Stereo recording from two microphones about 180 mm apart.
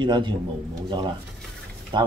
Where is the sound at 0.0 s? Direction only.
25° right (ahead or behind).